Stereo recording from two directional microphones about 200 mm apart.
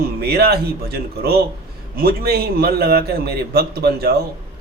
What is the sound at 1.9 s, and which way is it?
A man's voice, 50° right (ahead or behind).